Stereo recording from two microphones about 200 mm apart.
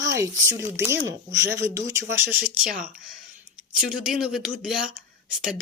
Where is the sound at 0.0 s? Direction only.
15° right (ahead or behind).